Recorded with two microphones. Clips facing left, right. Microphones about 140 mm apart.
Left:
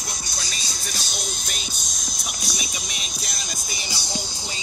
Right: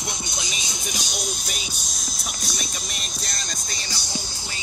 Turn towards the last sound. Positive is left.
turn(degrees=10)  # may be behind; listen again after turning